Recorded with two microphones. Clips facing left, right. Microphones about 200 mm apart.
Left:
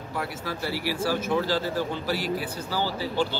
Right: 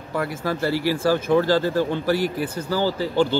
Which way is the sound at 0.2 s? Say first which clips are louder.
Right 7 dB; 50° right (ahead or behind).